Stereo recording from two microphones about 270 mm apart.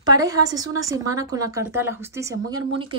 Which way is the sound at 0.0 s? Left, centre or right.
Centre.